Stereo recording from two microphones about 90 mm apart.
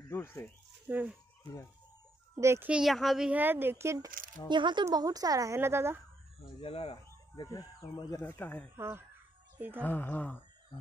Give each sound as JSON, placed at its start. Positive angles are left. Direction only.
{"t": 0.1, "sound": "speech", "side_deg": 25}
{"t": 0.8, "sound": "speech", "side_deg": -15}
{"t": 1.4, "sound": "speech", "side_deg": 35}
{"t": 2.3, "sound": "a child's voice", "side_deg": -30}
{"t": 2.8, "sound": "speech", "side_deg": 0}
{"t": 3.3, "sound": "speech", "side_deg": -20}
{"t": 4.5, "sound": "speech", "side_deg": -60}
{"t": 4.9, "sound": "a woman's voice", "side_deg": -45}
{"t": 6.6, "sound": "speech", "side_deg": 90}
{"t": 7.9, "sound": "speech", "side_deg": 40}
{"t": 8.2, "sound": "speech", "side_deg": 30}
{"t": 8.7, "sound": "speech", "side_deg": -25}
{"t": 9.8, "sound": "speech", "side_deg": 20}